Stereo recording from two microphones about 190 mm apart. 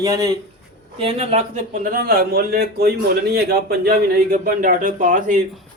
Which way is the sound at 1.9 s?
50° right (ahead or behind).